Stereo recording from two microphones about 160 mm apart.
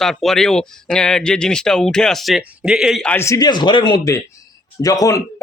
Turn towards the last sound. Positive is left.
turn(degrees=20)  # may be behind; listen again after turning